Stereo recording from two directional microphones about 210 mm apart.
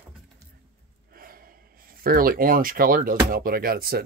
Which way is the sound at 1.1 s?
45° right (ahead or behind).